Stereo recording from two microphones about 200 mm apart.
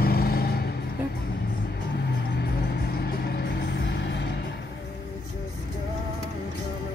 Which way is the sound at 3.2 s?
55° left (ahead or behind).